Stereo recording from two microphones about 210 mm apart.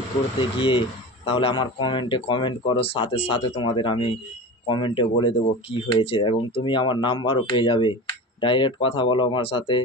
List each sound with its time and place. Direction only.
0.4 s speech: 25° left (ahead or behind)